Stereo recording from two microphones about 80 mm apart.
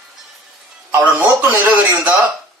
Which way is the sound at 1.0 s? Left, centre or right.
Right.